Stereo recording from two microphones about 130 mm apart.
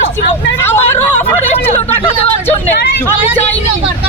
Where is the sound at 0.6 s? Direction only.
20° left (ahead or behind).